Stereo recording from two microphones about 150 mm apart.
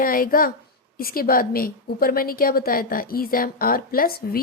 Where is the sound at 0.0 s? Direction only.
70° left (ahead or behind).